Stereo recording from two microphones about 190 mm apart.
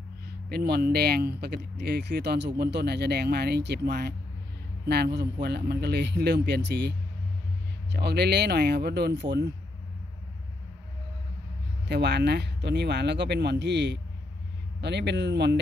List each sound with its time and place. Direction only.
0.5 s speech: 55° right (ahead or behind)
11.9 s speech: 60° right (ahead or behind)